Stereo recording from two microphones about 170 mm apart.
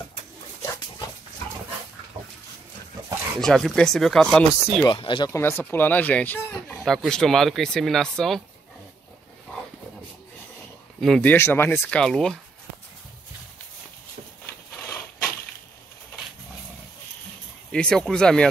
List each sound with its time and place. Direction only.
3.3 s speech: centre (ahead or behind)
4.8 s speech: 30° left (ahead or behind)
5.3 s speech: 15° left (ahead or behind)
11.0 s speech: 5° left (ahead or behind)
14.8 s a sound: 10° left (ahead or behind)
17.6 s speech: 5° left (ahead or behind)